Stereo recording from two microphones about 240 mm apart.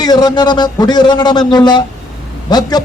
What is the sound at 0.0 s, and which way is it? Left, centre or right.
A man's voice, centre.